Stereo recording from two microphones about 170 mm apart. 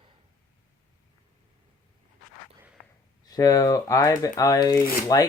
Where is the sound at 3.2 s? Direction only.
20° left (ahead or behind).